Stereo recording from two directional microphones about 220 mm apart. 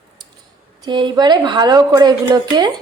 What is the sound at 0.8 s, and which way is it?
A woman's voice, 20° right (ahead or behind).